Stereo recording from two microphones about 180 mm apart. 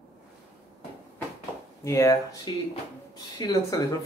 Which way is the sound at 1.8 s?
15° left (ahead or behind).